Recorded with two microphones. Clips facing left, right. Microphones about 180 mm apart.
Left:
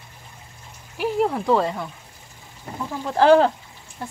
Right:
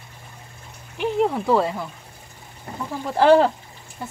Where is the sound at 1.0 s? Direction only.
Centre (ahead or behind).